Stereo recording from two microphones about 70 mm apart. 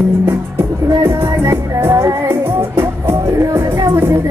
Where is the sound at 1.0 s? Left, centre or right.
Right.